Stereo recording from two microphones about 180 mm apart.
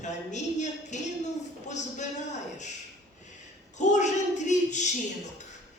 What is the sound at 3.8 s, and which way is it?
A woman's voice, 40° left (ahead or behind).